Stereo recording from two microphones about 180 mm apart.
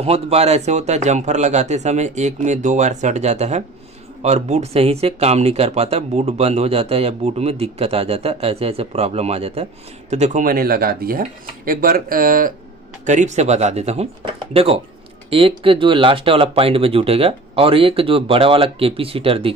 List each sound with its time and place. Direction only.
0.0 s speech: 35° right (ahead or behind)